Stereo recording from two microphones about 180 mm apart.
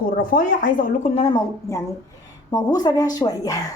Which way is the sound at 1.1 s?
30° left (ahead or behind).